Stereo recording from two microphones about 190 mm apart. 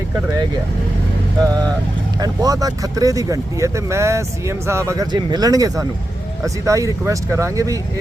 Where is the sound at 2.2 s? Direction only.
20° right (ahead or behind).